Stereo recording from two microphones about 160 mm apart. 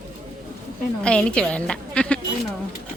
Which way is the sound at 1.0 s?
5° left (ahead or behind).